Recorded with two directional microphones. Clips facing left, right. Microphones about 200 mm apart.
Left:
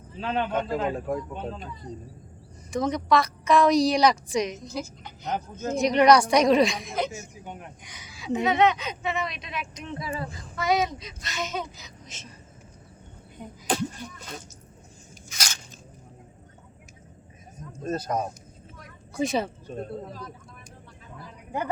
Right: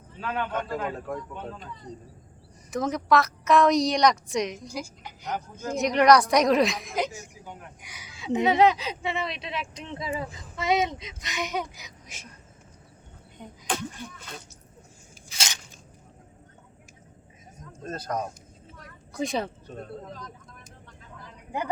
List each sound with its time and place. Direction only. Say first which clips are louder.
0.2 s a man's voice: left 3 dB; 25° left (ahead or behind)
2.6 s a woman's voice: left 1 dB; 5° right (ahead or behind)
4.6 s speech: left 2 dB; 10° right (ahead or behind)
5.7 s a woman's voice: left 1 dB; centre (ahead or behind)
6.9 s speech: even; 15° right (ahead or behind)
7.4 s a man's voice: left 3 dB; 20° left (ahead or behind)
7.8 s speech: left 1 dB; 10° right (ahead or behind)
8.1 s a sound: right 1 dB; 20° right (ahead or behind)
8.4 s speech: right 2 dB; 30° right (ahead or behind); by 12.3 s 10° right (ahead or behind)
13.4 s speech: left 3 dB; 5° left (ahead or behind)
15.3 s biting: right 1 dB; 25° right (ahead or behind)
17.8 s speech: left 3 dB; 10° left (ahead or behind)